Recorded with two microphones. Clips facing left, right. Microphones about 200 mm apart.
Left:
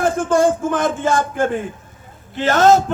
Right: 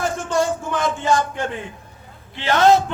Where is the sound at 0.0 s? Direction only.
50° left (ahead or behind).